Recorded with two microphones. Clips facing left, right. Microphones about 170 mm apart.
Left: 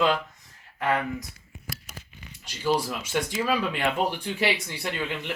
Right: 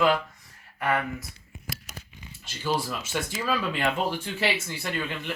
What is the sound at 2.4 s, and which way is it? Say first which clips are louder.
Speech: left 3 dB; 15° left (ahead or behind).